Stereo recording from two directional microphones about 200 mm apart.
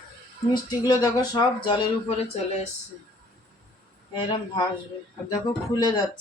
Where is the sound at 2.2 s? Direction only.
35° left (ahead or behind).